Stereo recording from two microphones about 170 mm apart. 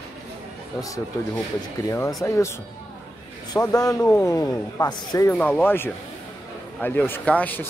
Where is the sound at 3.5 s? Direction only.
20° left (ahead or behind).